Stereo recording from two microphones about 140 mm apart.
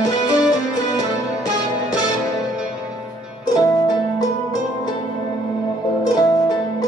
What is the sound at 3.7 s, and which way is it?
Music, 30° left (ahead or behind).